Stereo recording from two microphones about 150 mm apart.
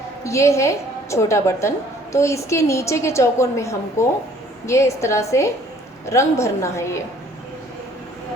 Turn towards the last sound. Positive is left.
turn(degrees=20)  # may be behind; listen again after turning